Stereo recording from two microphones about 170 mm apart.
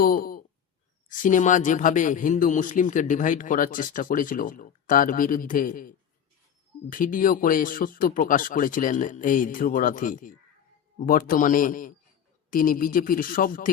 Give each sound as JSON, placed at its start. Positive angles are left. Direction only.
{"t": 0.0, "sound": "speech", "side_deg": 60}
{"t": 6.9, "sound": "speech", "side_deg": 55}